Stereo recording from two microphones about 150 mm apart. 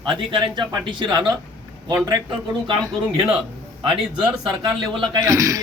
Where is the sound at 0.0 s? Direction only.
30° right (ahead or behind).